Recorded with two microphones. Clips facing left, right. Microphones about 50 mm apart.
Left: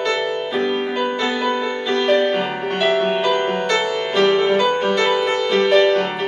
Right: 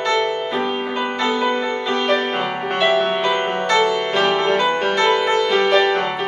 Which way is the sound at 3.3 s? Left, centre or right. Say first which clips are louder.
Right 1 dB; right.